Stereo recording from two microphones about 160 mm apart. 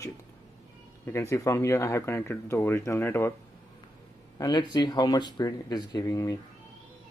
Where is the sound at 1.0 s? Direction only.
15° left (ahead or behind).